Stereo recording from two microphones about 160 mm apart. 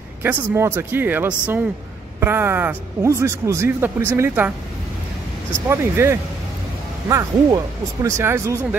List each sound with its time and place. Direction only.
0.2 s a man's voice: 15° right (ahead or behind)
5.7 s a man's voice: 15° right (ahead or behind)